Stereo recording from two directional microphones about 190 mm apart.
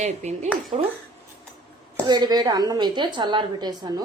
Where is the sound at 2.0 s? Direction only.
20° right (ahead or behind).